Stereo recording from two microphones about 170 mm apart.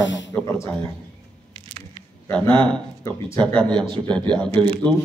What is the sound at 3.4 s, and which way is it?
Speech, 5° left (ahead or behind).